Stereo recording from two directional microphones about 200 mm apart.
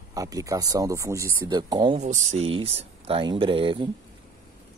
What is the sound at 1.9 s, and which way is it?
Speech, 35° right (ahead or behind).